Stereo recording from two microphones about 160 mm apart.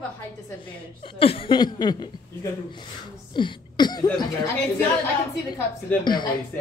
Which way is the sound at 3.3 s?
30° left (ahead or behind).